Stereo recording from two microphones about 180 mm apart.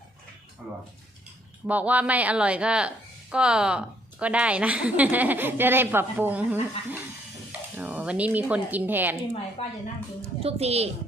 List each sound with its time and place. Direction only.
1.6 s a woman's voice: 10° right (ahead or behind)
7.8 s a woman's voice: 10° right (ahead or behind)
9.3 s a woman's voice: 35° left (ahead or behind)
10.4 s a woman's voice: 35° right (ahead or behind)